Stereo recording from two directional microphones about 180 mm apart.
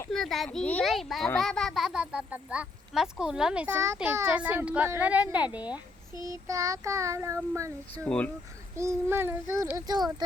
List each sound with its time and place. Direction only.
0.1 s a child's voice: centre (ahead or behind)
6.1 s a child's voice: 20° right (ahead or behind)
7.9 s speech: 5° left (ahead or behind)
8.7 s a child's voice: 15° right (ahead or behind)